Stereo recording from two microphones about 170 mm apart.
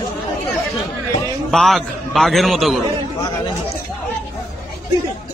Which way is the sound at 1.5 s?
Centre (ahead or behind).